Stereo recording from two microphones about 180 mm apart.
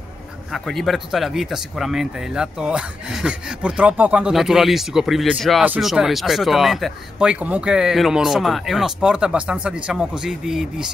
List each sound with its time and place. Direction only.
0.5 s speech: centre (ahead or behind)